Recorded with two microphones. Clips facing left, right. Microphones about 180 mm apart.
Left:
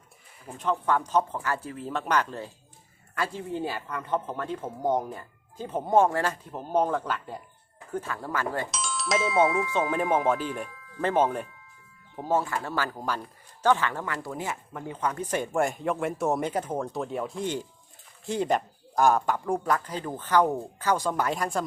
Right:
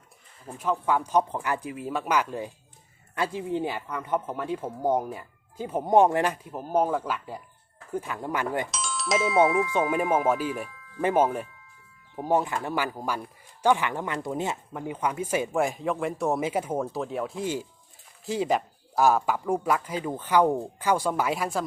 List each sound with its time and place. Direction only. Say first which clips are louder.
0.6 s speech: even; 10° right (ahead or behind)
8.7 s speech: right 1 dB; centre (ahead or behind)